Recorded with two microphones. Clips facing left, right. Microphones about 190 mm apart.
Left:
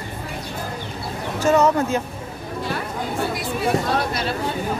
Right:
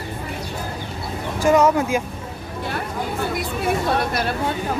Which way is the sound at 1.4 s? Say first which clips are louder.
Right 1 dB; 10° right (ahead or behind).